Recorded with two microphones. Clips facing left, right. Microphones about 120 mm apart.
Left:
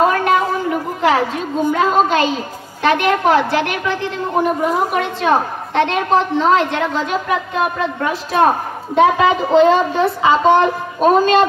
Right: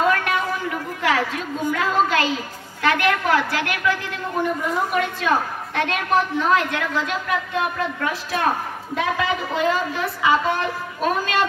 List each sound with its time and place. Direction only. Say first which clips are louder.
0.0 s a sound: left 6 dB; 30° left (ahead or behind)
1.7 s a woman's voice: left 5 dB; 25° left (ahead or behind)
4.4 s a woman's voice: left 7 dB; 80° left
4.9 s a woman's voice: left 5 dB; 25° left (ahead or behind)